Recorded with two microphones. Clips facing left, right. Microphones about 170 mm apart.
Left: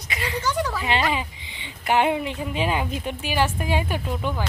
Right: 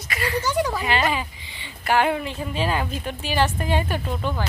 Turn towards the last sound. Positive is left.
turn(degrees=10)  # may be behind; listen again after turning